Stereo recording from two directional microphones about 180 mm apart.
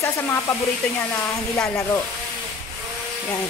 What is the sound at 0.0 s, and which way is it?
Hair dryer, 15° left (ahead or behind).